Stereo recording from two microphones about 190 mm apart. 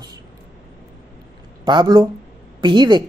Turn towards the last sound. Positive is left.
turn(degrees=-25)  # may be behind; listen again after turning